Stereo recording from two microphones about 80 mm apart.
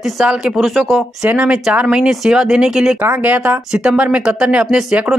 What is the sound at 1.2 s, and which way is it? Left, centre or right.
Speech, centre.